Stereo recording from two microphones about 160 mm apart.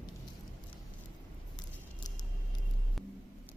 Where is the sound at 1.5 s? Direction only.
25° left (ahead or behind).